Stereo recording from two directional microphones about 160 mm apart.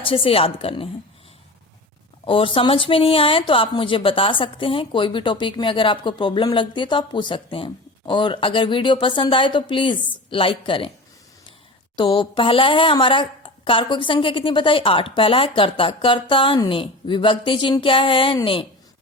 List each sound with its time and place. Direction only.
0.0 s speech: 35° left (ahead or behind)
2.2 s speech: 35° left (ahead or behind)
11.9 s speech: 35° left (ahead or behind)